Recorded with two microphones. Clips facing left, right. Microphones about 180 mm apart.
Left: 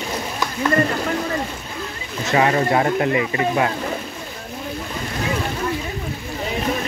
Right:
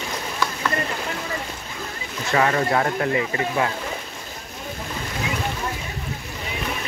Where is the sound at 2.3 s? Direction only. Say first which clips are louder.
Left 3 dB; 20° left (ahead or behind).